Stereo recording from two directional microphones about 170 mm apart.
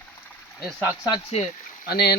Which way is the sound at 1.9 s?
65° left (ahead or behind).